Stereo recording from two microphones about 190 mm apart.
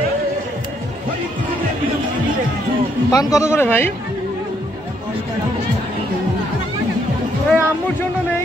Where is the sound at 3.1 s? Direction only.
15° left (ahead or behind).